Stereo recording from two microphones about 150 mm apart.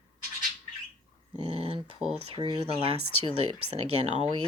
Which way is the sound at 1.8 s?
5° right (ahead or behind).